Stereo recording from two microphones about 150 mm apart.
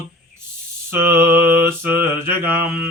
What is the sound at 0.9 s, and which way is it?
Speech, 15° right (ahead or behind).